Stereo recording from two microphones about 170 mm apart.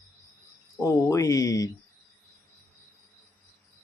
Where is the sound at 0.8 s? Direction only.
20° left (ahead or behind).